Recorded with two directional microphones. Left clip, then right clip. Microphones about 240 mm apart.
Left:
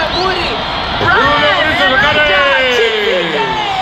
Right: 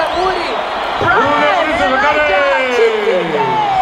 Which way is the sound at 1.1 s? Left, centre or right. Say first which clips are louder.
Left 2 dB; left.